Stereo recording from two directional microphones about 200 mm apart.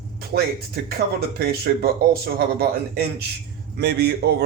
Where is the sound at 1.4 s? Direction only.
50° right (ahead or behind).